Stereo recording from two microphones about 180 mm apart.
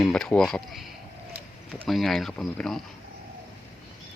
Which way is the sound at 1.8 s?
Centre (ahead or behind).